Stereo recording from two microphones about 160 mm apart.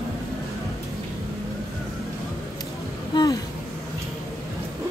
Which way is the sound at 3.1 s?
25° left (ahead or behind).